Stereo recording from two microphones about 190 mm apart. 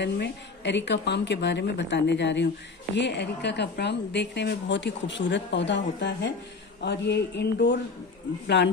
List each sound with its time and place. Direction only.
0.0 s a woman's voice: 65° left (ahead or behind)